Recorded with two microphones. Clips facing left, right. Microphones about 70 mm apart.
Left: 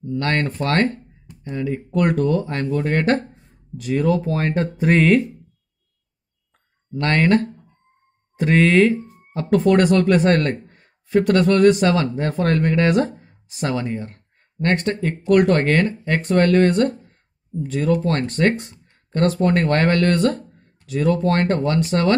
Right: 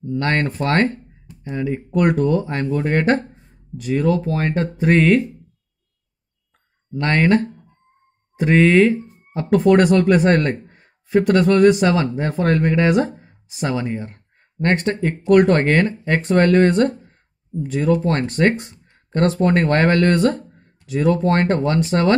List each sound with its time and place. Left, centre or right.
0.1 s speech: right
3.7 s speech: centre
7.0 s speech: centre
13.9 s speech: right